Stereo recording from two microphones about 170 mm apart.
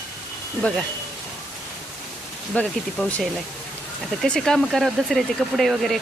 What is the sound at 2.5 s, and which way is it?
Speech, 5° left (ahead or behind).